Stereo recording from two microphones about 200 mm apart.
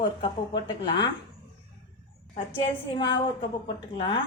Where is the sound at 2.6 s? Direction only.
25° left (ahead or behind).